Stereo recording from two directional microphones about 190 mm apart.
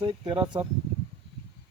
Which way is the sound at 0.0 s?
25° right (ahead or behind).